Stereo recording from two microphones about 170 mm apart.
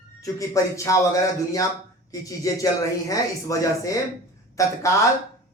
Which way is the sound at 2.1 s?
20° left (ahead or behind).